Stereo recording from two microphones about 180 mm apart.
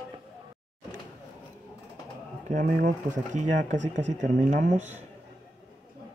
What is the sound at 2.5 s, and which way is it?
Speech, 50° right (ahead or behind).